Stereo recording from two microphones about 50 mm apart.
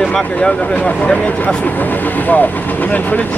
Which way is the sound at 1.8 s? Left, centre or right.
Left.